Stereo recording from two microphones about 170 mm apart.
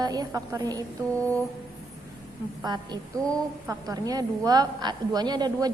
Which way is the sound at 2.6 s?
25° right (ahead or behind).